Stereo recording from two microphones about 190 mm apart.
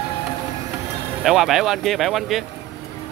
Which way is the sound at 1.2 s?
Centre (ahead or behind).